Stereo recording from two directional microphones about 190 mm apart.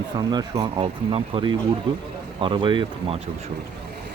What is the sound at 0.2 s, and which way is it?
Speech, 20° right (ahead or behind).